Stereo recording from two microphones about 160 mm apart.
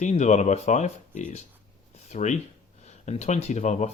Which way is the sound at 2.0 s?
45° left (ahead or behind).